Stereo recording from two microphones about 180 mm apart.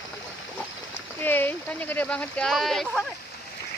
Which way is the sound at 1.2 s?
10° left (ahead or behind).